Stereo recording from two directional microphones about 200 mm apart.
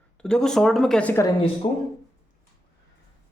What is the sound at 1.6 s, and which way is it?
Speech, 30° left (ahead or behind).